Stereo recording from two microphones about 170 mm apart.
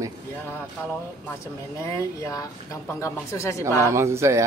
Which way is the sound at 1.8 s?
15° left (ahead or behind).